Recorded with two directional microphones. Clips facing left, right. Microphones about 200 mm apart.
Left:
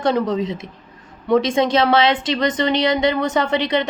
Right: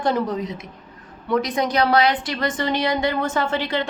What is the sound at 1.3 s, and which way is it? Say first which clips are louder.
A woman's voice: left 5 dB; 25° left (ahead or behind).